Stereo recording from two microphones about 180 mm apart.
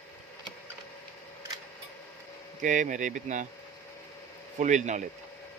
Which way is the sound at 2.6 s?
45° right (ahead or behind).